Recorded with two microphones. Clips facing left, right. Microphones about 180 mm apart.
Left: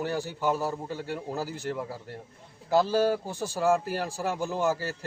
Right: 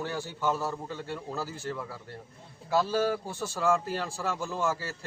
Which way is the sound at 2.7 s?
40° left (ahead or behind).